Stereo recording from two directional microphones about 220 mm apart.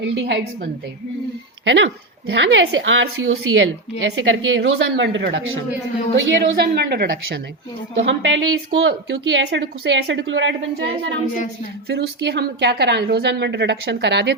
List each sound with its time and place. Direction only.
0.0 s a woman's voice: 55° right (ahead or behind)
7.9 s a woman's voice: 60° right (ahead or behind)